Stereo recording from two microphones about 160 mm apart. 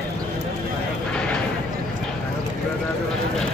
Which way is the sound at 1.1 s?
5° left (ahead or behind).